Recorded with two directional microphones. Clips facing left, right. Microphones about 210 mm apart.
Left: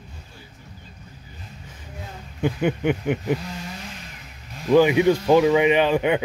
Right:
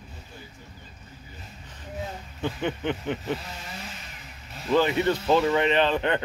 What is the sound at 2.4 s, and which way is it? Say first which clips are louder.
Speech: left 6 dB; 10° left (ahead or behind).